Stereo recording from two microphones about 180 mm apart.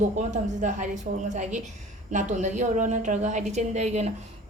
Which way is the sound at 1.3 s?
40° right (ahead or behind).